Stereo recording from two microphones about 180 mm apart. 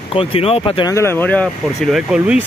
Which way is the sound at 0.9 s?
15° left (ahead or behind).